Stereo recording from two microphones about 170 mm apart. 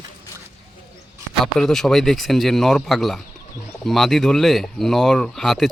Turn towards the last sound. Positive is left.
turn(degrees=0)  # may be behind; listen again after turning